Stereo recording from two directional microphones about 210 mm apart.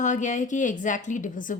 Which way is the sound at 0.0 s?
35° left (ahead or behind).